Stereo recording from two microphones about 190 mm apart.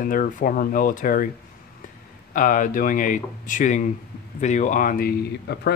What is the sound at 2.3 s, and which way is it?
Speech, 45° left (ahead or behind).